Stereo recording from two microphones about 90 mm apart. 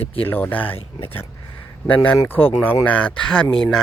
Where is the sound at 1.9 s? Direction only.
15° left (ahead or behind).